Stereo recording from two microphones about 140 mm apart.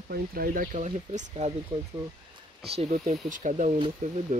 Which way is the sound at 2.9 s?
65° right (ahead or behind).